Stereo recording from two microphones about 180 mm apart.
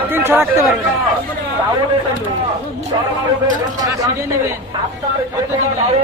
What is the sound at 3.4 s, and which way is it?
Speech, 20° right (ahead or behind).